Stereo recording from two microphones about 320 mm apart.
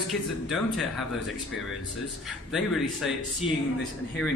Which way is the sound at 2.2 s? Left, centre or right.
Centre.